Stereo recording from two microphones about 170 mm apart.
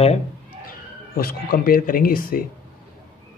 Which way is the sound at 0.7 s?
60° left (ahead or behind).